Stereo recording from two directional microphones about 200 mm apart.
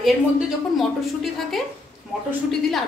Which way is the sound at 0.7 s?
Centre (ahead or behind).